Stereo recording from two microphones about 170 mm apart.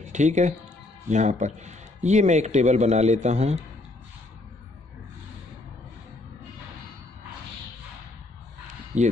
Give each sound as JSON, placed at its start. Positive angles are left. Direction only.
{"t": 0.0, "sound": "a man's voice", "side_deg": -45}
{"t": 8.9, "sound": "a man's voice", "side_deg": -45}